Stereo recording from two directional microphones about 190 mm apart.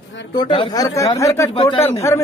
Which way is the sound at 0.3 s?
25° left (ahead or behind).